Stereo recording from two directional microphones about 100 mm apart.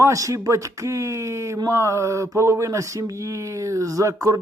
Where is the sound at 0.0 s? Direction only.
35° right (ahead or behind).